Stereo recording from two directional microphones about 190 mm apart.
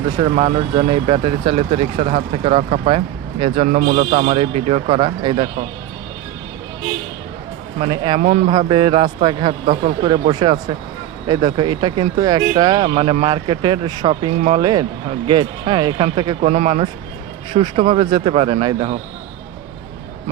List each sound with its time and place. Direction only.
0.2 s speech: 30° right (ahead or behind)
3.7 s a man's voice: 40° right (ahead or behind)
4.2 s speech: 30° right (ahead or behind)
7.8 s speech: 25° right (ahead or behind)
8.2 s speech: 40° right (ahead or behind)
8.5 s speech: 25° right (ahead or behind)
12.9 s speech: 30° right (ahead or behind)